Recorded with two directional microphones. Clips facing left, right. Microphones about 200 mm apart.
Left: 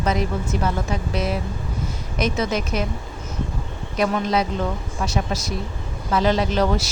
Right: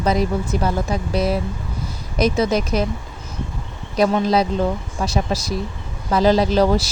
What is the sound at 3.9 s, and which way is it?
Speech, 35° right (ahead or behind).